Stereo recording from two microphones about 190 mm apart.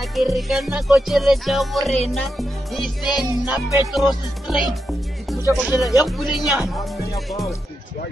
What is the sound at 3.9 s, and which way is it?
Speech, centre (ahead or behind).